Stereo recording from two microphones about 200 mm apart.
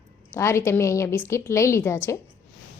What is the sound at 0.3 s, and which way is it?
A woman's voice, 15° left (ahead or behind).